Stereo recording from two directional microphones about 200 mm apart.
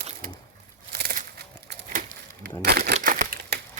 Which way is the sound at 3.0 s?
40° right (ahead or behind).